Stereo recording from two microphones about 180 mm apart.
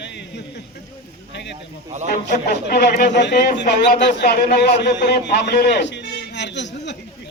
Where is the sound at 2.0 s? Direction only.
50° left (ahead or behind).